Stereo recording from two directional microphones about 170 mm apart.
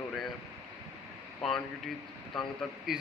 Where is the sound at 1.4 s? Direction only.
Centre (ahead or behind).